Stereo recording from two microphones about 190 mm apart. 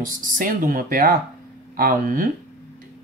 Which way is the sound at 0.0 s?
45° right (ahead or behind).